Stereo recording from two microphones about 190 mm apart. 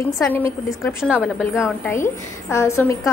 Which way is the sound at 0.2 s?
10° left (ahead or behind).